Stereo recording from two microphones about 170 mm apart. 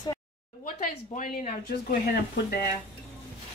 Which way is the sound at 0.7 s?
50° left (ahead or behind).